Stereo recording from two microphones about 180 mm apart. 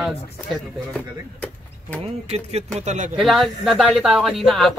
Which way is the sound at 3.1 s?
Centre (ahead or behind).